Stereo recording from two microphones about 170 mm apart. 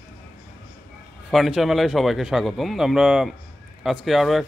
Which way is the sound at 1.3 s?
Centre (ahead or behind).